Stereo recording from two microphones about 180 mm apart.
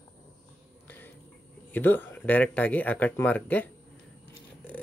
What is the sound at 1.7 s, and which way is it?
Speech, 10° left (ahead or behind).